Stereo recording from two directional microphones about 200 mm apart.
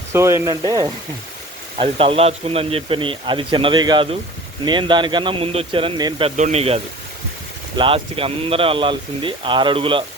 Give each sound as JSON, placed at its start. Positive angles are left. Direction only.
{"t": 0.1, "sound": "speech", "side_deg": -15}
{"t": 1.8, "sound": "speech", "side_deg": -25}